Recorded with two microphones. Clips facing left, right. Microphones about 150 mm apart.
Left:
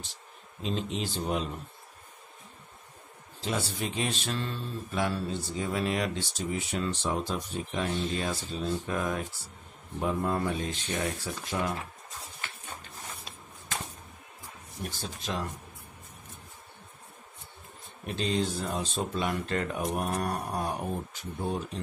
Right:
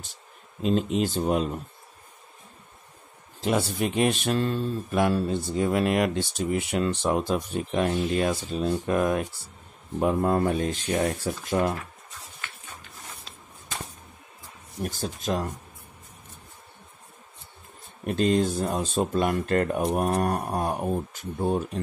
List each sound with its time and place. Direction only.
0.6 s speech: 50° right (ahead or behind)
3.3 s speech: 55° right (ahead or behind)
14.8 s speech: 45° right (ahead or behind)
18.0 s speech: 50° right (ahead or behind)